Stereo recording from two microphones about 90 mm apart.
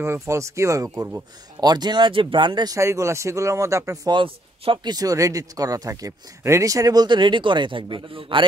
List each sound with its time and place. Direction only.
0.0 s speech: 30° right (ahead or behind)
1.6 s speech: 50° right (ahead or behind)
2.7 s speech: 35° right (ahead or behind)
4.1 s speech: 65° right (ahead or behind)
4.9 s speech: 40° right (ahead or behind); by 8.5 s 75° right (ahead or behind)